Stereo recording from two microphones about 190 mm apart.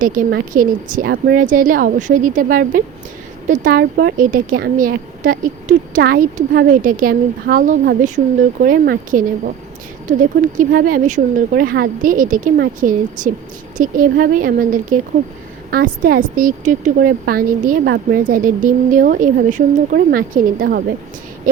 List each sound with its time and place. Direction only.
0.0 s a woman's voice: 45° right (ahead or behind)
10.6 s a woman's voice: 50° right (ahead or behind)